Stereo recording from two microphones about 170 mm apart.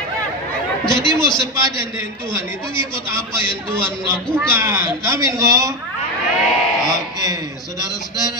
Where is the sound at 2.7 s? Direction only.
30° left (ahead or behind).